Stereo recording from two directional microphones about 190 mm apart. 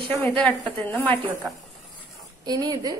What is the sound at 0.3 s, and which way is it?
Speech, 5° left (ahead or behind).